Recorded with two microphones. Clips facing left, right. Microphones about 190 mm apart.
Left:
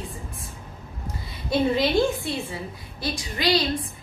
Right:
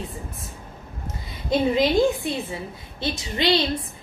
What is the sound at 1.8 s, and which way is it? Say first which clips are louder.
A woman's voice: right 3 dB; 20° right (ahead or behind).